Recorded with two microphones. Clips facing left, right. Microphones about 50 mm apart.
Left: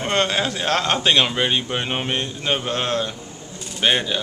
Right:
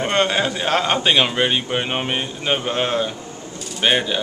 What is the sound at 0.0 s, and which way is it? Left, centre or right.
A man's voice, centre.